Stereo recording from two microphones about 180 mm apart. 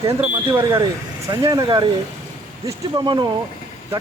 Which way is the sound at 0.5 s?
20° right (ahead or behind).